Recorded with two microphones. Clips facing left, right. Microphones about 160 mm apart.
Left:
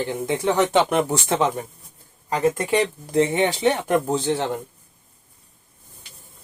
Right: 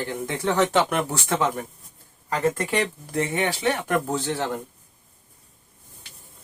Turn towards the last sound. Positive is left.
turn(degrees=20)  # may be behind; listen again after turning